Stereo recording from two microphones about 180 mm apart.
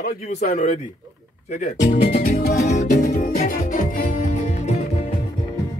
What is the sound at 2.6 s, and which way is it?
Music, 40° left (ahead or behind).